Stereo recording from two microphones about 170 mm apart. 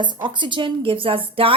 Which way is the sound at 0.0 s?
30° right (ahead or behind).